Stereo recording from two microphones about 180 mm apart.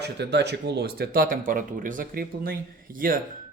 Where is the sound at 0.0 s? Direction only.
70° right (ahead or behind).